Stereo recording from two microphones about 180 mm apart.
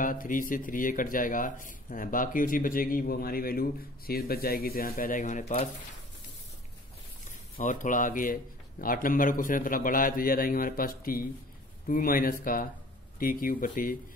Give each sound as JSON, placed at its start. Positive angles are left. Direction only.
{"t": 0.0, "sound": "speech", "side_deg": 50}
{"t": 7.2, "sound": "speech", "side_deg": 45}